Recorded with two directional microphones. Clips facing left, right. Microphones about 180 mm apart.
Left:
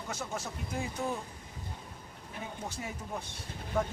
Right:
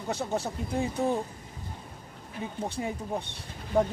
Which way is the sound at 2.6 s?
30° right (ahead or behind).